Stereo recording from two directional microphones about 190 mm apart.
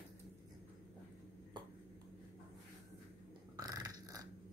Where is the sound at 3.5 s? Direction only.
20° right (ahead or behind).